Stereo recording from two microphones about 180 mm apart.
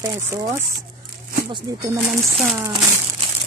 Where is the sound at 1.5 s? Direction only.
25° right (ahead or behind).